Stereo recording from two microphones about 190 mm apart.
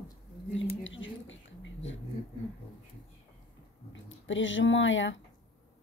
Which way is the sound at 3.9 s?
80° left.